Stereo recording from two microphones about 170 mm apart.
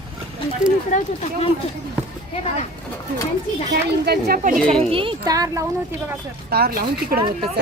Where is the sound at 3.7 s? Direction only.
70° right (ahead or behind).